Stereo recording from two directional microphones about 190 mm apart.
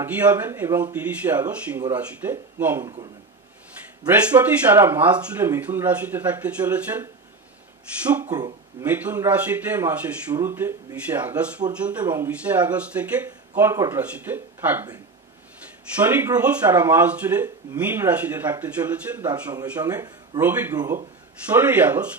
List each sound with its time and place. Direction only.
0.0 s speech: 10° right (ahead or behind)
4.1 s speech: 10° right (ahead or behind)
8.2 s a man's voice: 20° right (ahead or behind)
8.8 s speech: 10° right (ahead or behind)
16.1 s a man's voice: 10° right (ahead or behind)
21.5 s speech: 10° right (ahead or behind)